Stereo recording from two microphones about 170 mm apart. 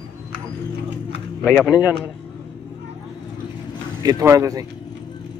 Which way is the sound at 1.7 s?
25° left (ahead or behind).